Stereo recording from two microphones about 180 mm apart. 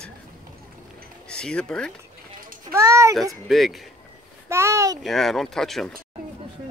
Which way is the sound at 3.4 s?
Centre (ahead or behind).